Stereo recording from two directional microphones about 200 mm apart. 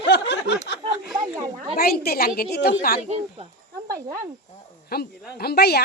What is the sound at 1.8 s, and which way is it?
Speech, 50° left (ahead or behind).